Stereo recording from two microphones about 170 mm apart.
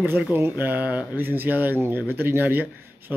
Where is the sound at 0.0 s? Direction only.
10° right (ahead or behind).